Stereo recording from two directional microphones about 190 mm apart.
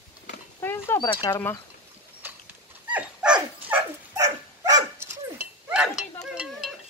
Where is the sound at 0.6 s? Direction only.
10° left (ahead or behind).